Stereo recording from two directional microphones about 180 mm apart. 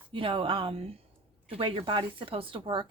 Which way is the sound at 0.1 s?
30° right (ahead or behind).